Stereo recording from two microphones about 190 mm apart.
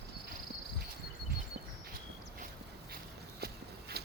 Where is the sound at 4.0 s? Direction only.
55° right (ahead or behind).